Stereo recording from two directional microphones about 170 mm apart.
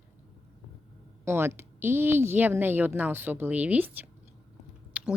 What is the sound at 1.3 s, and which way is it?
Speech, 15° right (ahead or behind).